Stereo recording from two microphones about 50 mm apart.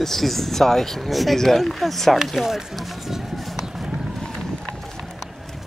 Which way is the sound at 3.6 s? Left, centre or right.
Centre.